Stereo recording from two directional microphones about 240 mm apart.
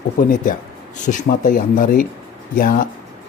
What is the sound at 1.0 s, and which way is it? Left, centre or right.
Speech, left.